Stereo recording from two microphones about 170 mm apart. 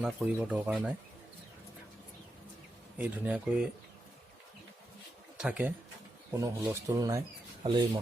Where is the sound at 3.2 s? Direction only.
5° right (ahead or behind).